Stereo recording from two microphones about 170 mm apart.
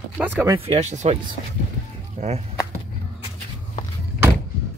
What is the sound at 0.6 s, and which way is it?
Speech, 40° right (ahead or behind).